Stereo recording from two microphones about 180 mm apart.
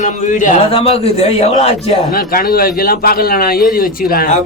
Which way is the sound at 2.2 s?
55° left (ahead or behind).